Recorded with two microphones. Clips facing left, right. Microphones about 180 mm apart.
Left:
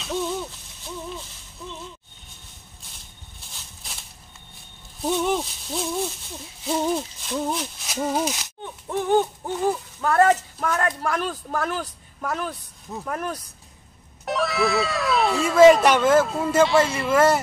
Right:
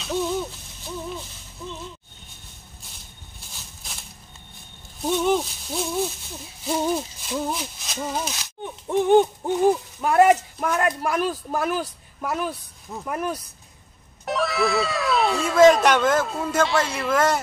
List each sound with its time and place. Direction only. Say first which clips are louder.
0.0 s hoot: right 2 dB; centre (ahead or behind)
5.0 s hoot: right 2 dB; centre (ahead or behind)
8.6 s speech: right 4 dB; 20° right (ahead or behind); by 17.4 s 5° left (ahead or behind)